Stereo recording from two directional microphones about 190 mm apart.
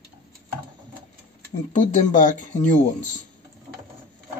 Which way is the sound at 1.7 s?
40° left (ahead or behind).